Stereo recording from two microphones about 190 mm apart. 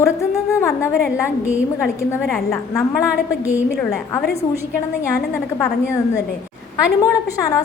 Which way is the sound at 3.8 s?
5° left (ahead or behind).